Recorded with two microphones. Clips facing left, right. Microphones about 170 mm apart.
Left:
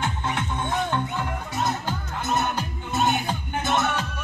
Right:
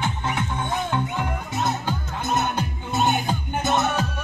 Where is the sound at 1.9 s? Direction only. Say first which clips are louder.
Right 1 dB; 20° right (ahead or behind).